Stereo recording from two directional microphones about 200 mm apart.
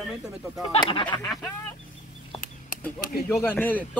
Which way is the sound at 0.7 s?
25° left (ahead or behind).